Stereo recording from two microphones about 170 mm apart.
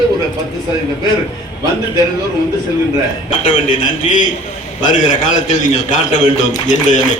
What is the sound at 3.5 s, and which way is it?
A man's voice, 45° left (ahead or behind).